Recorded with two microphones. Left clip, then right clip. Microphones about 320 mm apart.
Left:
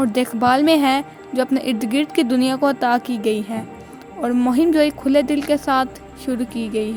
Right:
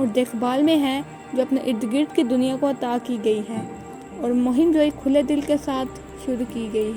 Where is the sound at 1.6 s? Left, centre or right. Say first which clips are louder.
Left 2 dB; left.